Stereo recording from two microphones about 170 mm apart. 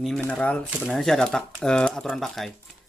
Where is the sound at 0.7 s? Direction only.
5° right (ahead or behind).